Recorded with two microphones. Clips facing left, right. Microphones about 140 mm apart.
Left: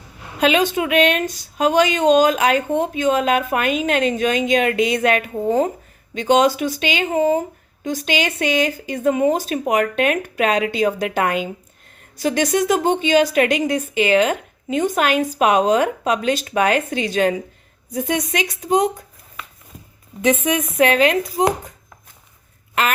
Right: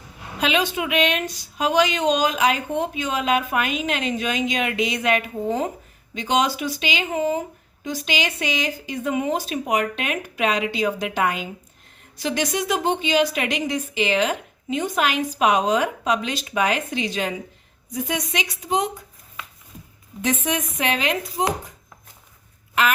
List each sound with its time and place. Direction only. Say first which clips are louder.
0.3 s speech: left 5 dB; 45° left (ahead or behind)
20.7 s speech: left 11 dB; 50° left (ahead or behind)